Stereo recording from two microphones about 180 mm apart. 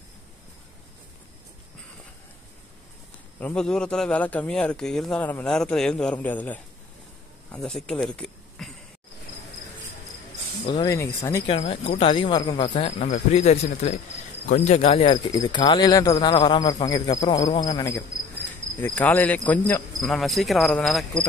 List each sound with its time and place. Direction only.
3.3 s a man's voice: 5° left (ahead or behind)
10.6 s a sound: 35° left (ahead or behind)
11.2 s speech: 30° left (ahead or behind)
12.8 s speech: 40° left (ahead or behind); by 18.0 s 20° left (ahead or behind)
18.8 s cricket: 10° left (ahead or behind)